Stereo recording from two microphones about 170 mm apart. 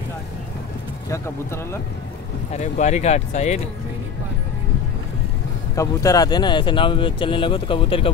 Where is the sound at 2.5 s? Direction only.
45° left (ahead or behind).